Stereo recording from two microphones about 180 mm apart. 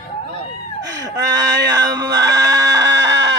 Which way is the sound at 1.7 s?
20° right (ahead or behind).